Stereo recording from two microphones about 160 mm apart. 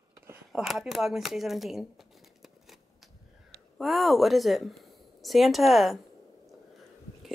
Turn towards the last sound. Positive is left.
turn(degrees=0)  # may be behind; listen again after turning